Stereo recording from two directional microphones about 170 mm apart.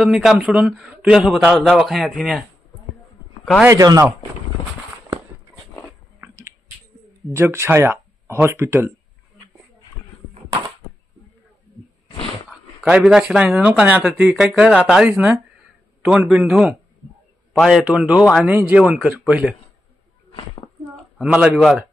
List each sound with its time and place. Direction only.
0.0 s speech: centre (ahead or behind)
3.6 s speech: 20° right (ahead or behind)
6.2 s a sound: 15° right (ahead or behind)
7.3 s speech: 15° right (ahead or behind)
12.4 s a man's voice: 5° right (ahead or behind)
20.2 s a sound: 25° left (ahead or behind)
20.9 s a man's voice: 5° right (ahead or behind)